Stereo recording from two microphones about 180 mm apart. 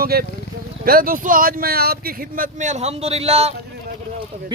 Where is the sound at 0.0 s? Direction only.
55° right (ahead or behind).